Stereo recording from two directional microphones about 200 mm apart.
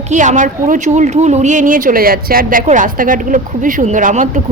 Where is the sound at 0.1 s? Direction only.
40° right (ahead or behind).